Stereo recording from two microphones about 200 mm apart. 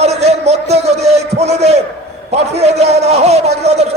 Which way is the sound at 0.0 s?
30° right (ahead or behind).